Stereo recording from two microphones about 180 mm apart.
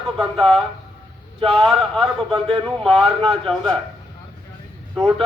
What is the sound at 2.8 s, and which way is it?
Speech, centre (ahead or behind).